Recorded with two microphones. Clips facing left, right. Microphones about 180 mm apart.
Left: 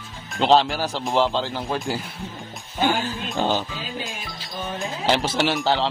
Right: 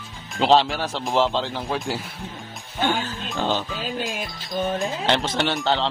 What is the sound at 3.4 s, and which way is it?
Speech, 15° left (ahead or behind).